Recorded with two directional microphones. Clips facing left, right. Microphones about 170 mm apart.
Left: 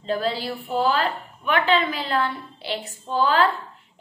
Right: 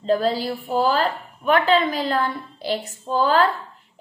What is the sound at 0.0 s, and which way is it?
A woman's voice, 40° right (ahead or behind).